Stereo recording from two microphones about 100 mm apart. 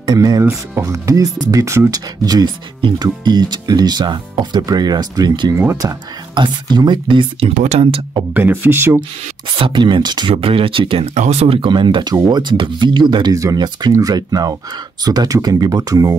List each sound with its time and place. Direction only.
0.0 s speech: 35° right (ahead or behind)
5.5 s speech: 25° right (ahead or behind)
6.3 s speech: 50° right (ahead or behind); by 8.0 s 75° right (ahead or behind)
8.4 s speech: 20° right (ahead or behind)
9.5 s speech: 50° right (ahead or behind)
10.3 s speech: 65° right (ahead or behind); by 11.6 s 85° right
11.6 s speech: 50° right (ahead or behind)
13.3 s speech: 35° right (ahead or behind)